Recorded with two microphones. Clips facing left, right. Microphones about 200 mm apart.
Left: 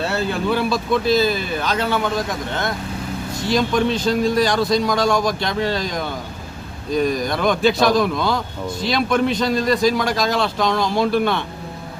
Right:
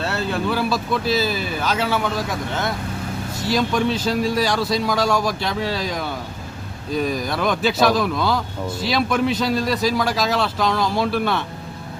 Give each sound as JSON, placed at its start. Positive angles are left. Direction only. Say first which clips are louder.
{"t": 0.0, "sound": "speech", "louder": "left 2 dB", "side_deg": 0}